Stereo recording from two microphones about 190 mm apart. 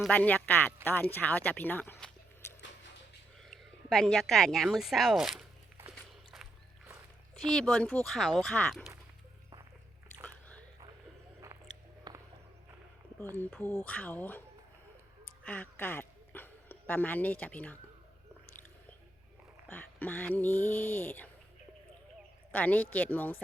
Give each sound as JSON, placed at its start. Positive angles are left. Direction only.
{"t": 0.0, "sound": "speech", "side_deg": 5}
{"t": 3.5, "sound": "speech", "side_deg": 0}
{"t": 7.3, "sound": "speech", "side_deg": 0}
{"t": 12.1, "sound": "walk", "side_deg": -25}
{"t": 13.3, "sound": "speech", "side_deg": 10}
{"t": 15.4, "sound": "speech", "side_deg": 10}
{"t": 19.6, "sound": "speech", "side_deg": 10}
{"t": 22.5, "sound": "speech", "side_deg": 10}